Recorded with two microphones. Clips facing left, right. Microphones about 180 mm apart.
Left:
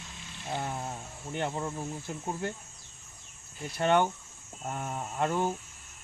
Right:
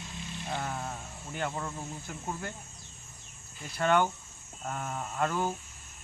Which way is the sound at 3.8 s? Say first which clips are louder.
Left 1 dB; 20° left (ahead or behind).